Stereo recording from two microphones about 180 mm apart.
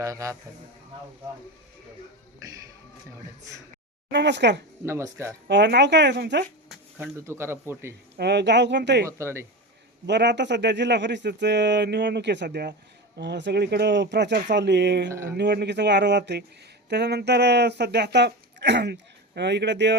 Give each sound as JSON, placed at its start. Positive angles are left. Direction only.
{"t": 0.0, "sound": "speech", "side_deg": -15}
{"t": 4.1, "sound": "speech", "side_deg": -75}
{"t": 4.8, "sound": "speech", "side_deg": -15}
{"t": 5.5, "sound": "speech", "side_deg": -70}
{"t": 7.3, "sound": "speech", "side_deg": -15}
{"t": 8.1, "sound": "speech", "side_deg": -70}
{"t": 9.0, "sound": "speech", "side_deg": -15}
{"t": 10.1, "sound": "speech", "side_deg": -75}
{"t": 15.1, "sound": "speech", "side_deg": -15}
{"t": 15.4, "sound": "speech", "side_deg": -70}